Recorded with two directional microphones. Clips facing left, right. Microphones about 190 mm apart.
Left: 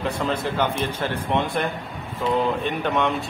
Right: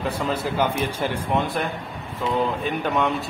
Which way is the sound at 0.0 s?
5° right (ahead or behind).